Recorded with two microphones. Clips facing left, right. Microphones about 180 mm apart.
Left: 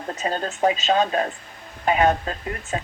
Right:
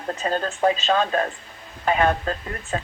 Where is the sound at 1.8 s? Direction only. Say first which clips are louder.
Left 1 dB; 20° left (ahead or behind).